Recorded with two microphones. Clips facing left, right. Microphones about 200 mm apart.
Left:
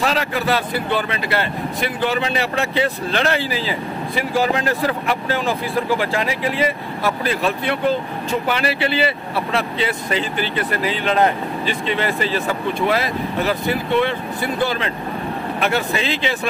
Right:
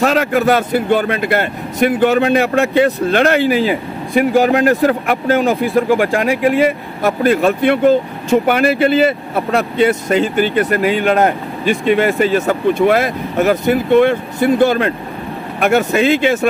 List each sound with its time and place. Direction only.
0.0 s speech: 50° right (ahead or behind)